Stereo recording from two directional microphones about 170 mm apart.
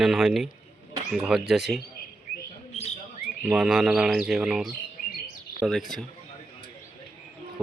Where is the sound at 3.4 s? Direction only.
5° right (ahead or behind).